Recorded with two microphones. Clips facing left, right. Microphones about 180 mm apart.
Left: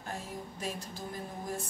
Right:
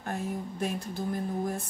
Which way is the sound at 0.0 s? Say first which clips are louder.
Right 7 dB; 55° right (ahead or behind).